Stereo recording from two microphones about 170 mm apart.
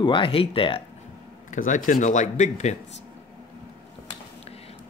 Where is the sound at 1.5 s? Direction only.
50° left (ahead or behind).